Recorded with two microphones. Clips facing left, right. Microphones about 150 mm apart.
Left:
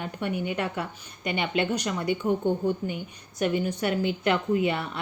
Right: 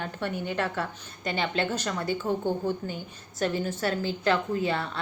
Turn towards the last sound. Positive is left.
turn(degrees=20)  # may be behind; listen again after turning